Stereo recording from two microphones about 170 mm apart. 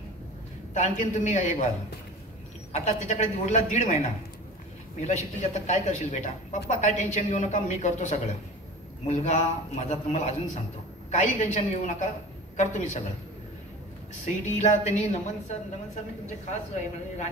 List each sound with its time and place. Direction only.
0.7 s speech: 45° left (ahead or behind)
2.7 s speech: 45° left (ahead or behind)
14.2 s a woman's voice: 45° left (ahead or behind)